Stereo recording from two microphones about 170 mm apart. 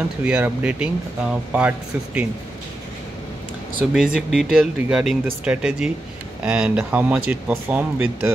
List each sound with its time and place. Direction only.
0.2 s speech: 10° right (ahead or behind)
3.9 s speech: 5° right (ahead or behind)